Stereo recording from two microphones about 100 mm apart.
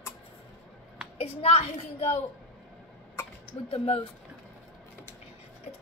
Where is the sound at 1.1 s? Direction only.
85° left.